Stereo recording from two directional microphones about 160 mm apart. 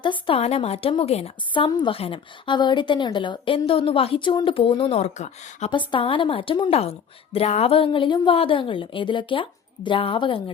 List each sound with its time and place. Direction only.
0.0 s a woman's voice: 30° left (ahead or behind)
5.7 s a woman's voice: 30° left (ahead or behind)